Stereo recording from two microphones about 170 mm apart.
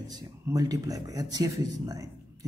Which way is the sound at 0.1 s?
20° right (ahead or behind).